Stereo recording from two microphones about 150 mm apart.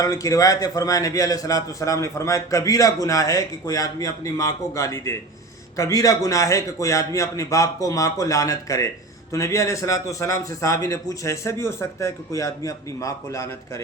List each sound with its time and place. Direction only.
0.0 s a man's voice: 20° left (ahead or behind)